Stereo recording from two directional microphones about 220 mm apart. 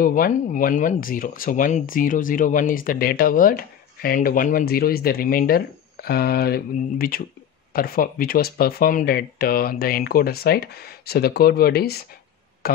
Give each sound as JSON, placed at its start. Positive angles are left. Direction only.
{"t": 0.0, "sound": "speech", "side_deg": 40}